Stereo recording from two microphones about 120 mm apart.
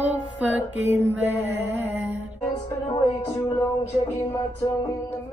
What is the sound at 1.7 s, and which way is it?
Mantra, 15° right (ahead or behind).